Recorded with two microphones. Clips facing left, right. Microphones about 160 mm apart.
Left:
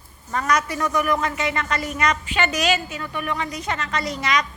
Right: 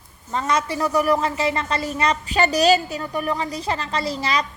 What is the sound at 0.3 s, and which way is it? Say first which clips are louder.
A woman's voice: even; 25° right (ahead or behind).